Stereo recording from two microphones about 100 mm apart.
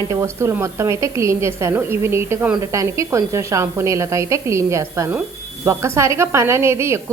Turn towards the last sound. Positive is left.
turn(degrees=-25)  # may be behind; listen again after turning